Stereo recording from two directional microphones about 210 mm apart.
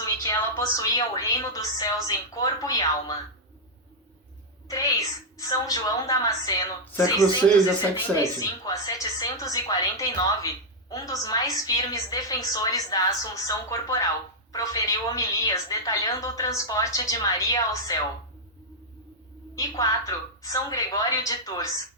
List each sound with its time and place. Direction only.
0.0 s a sound: 15° left (ahead or behind)
0.8 s a woman's voice: 15° left (ahead or behind)
4.7 s a woman's voice: 15° left (ahead or behind)
19.5 s a woman's voice: 15° left (ahead or behind)